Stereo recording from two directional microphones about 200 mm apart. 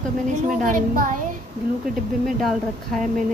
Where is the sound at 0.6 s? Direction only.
40° right (ahead or behind).